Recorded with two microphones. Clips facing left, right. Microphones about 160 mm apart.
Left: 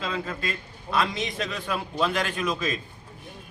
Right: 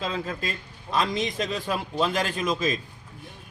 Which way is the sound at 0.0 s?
40° right (ahead or behind).